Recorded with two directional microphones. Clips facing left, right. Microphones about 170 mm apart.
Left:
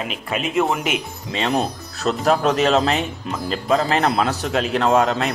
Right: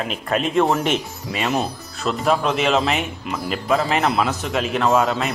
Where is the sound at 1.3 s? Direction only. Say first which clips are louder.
Left 1 dB; 30° left (ahead or behind).